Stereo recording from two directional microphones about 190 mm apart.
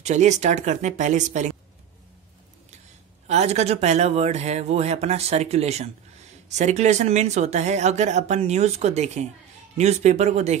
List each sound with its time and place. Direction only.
0.0 s speech: 35° right (ahead or behind)
3.3 s speech: 35° right (ahead or behind)